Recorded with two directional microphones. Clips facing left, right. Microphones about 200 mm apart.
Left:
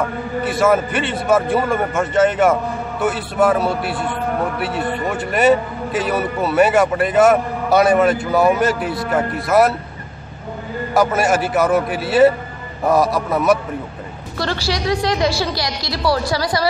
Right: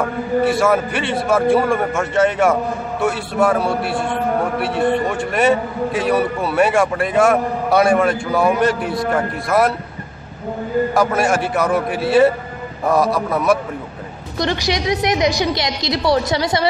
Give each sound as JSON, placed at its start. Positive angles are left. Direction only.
{"t": 0.5, "sound": "a man's voice", "side_deg": 0}
{"t": 11.0, "sound": "a man's voice", "side_deg": 5}
{"t": 14.4, "sound": "a woman's voice", "side_deg": -20}